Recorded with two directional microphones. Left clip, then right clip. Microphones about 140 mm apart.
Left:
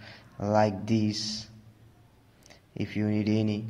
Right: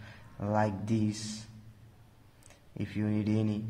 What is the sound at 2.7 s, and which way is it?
Speech, 20° left (ahead or behind).